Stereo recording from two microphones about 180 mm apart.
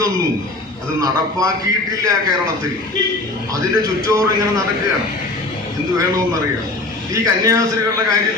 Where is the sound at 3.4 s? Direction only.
20° right (ahead or behind).